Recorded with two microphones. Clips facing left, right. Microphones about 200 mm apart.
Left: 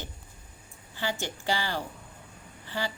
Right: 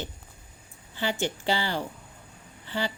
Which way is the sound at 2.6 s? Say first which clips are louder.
Right 3 dB; 20° right (ahead or behind).